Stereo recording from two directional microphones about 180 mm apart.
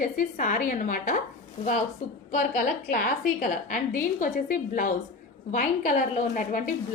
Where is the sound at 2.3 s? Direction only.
50° left (ahead or behind).